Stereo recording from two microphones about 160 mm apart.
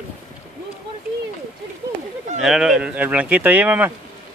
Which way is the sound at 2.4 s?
Centre (ahead or behind).